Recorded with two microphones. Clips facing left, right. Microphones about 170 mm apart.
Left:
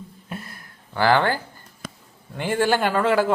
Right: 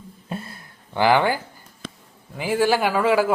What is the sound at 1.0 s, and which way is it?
Speech, 15° right (ahead or behind).